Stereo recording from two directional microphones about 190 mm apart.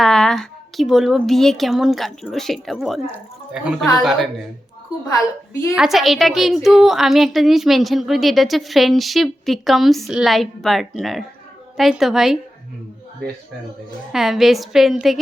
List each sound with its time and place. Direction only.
0.0 s a woman's voice: 5° left (ahead or behind)
5.0 s a woman's voice: 15° left (ahead or behind)
5.7 s a woman's voice: centre (ahead or behind)
14.1 s a woman's voice: centre (ahead or behind)